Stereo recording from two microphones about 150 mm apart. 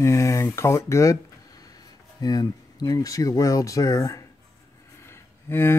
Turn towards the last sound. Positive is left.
turn(degrees=15)  # may be behind; listen again after turning